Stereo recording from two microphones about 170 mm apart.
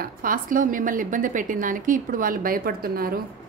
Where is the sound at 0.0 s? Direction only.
55° right (ahead or behind).